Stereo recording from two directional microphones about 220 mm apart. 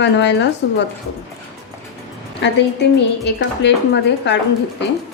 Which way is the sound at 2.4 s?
50° left (ahead or behind).